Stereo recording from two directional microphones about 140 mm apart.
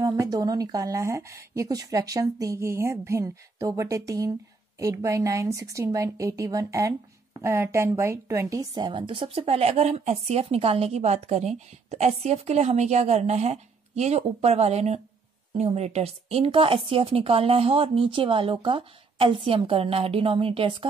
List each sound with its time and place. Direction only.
0.0 s a woman's voice: 25° right (ahead or behind)